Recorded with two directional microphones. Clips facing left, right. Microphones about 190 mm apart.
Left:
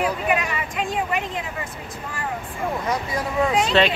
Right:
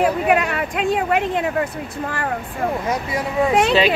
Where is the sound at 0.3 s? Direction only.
60° right (ahead or behind).